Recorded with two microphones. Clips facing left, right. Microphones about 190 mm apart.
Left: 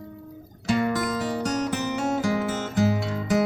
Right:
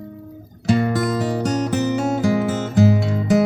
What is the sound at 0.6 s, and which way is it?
Music, 30° right (ahead or behind).